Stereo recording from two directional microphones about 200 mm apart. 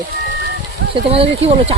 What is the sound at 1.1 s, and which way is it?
Speech, 30° right (ahead or behind).